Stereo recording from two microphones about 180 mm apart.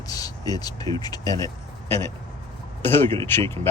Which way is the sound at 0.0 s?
20° left (ahead or behind).